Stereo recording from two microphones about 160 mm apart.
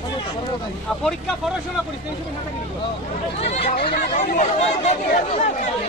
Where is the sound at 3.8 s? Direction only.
55° left (ahead or behind).